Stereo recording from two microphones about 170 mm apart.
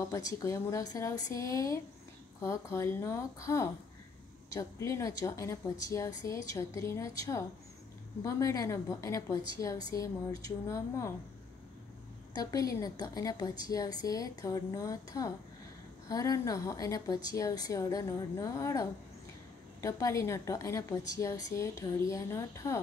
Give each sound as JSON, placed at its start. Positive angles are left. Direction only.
{"t": 0.1, "sound": "a woman's voice", "side_deg": 20}
{"t": 12.4, "sound": "a woman's voice", "side_deg": 20}